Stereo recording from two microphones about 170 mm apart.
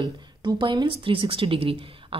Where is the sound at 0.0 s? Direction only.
25° right (ahead or behind).